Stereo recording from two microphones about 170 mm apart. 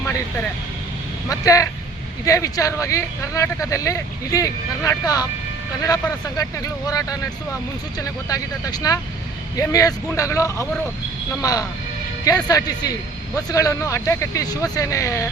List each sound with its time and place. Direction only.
1.3 s a man's voice: 20° left (ahead or behind)
12.2 s a man's voice: 20° left (ahead or behind)